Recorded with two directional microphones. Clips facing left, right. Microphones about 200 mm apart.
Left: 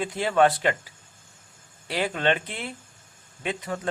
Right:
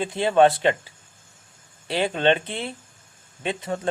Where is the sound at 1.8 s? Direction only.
25° right (ahead or behind).